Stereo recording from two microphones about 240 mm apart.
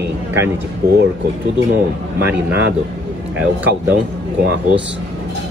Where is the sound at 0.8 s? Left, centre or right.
Right.